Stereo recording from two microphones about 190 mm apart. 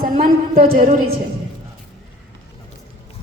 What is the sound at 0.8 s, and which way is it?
Speech, 35° right (ahead or behind).